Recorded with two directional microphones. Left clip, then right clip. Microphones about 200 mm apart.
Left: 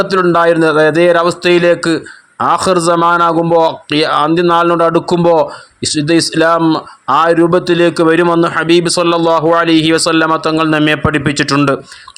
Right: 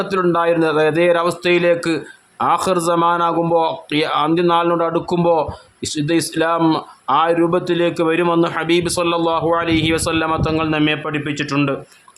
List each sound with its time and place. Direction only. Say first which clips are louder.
0.0 s a man's voice: left 7 dB; 25° left (ahead or behind)
6.6 s speech: left 4 dB; 10° left (ahead or behind)
7.1 s a man's voice: left 6 dB; 20° left (ahead or behind)